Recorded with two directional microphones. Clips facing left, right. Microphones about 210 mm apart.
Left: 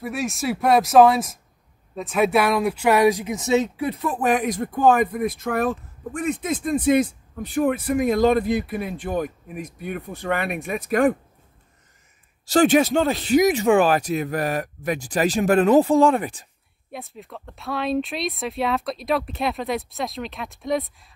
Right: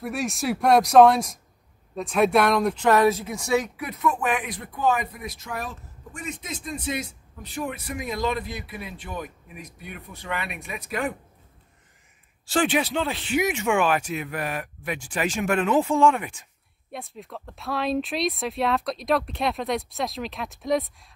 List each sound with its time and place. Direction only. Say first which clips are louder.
0.0 s speech: left 2 dB; centre (ahead or behind); by 11.1 s 50° left (ahead or behind)
12.4 s speech: left 7 dB; 40° left (ahead or behind)
16.9 s speech: left 1 dB; centre (ahead or behind)